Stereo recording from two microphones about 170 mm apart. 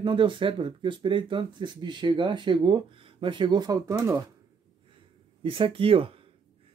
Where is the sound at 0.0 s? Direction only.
30° right (ahead or behind).